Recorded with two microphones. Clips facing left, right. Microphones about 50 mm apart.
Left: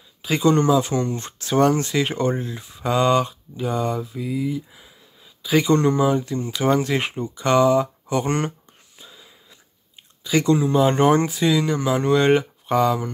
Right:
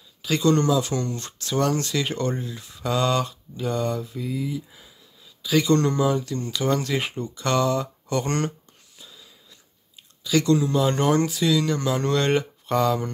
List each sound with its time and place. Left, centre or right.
0.2 s speech: centre
5.4 s speech: left
7.2 s a sound: centre
10.2 s speech: left; by 13.1 s centre